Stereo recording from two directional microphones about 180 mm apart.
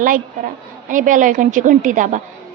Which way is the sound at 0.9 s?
45° right (ahead or behind).